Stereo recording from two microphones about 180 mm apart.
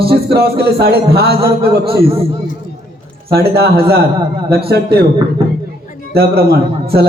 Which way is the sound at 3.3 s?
60° right (ahead or behind).